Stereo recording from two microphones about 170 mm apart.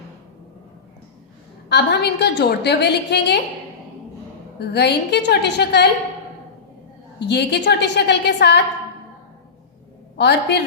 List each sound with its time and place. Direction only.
1.7 s a woman's voice: 75° left (ahead or behind)
4.6 s a woman's voice: 75° left (ahead or behind)
7.2 s a woman's voice: 80° left
10.2 s a woman's voice: 80° left